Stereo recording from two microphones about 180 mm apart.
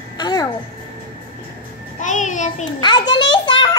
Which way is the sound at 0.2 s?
20° left (ahead or behind).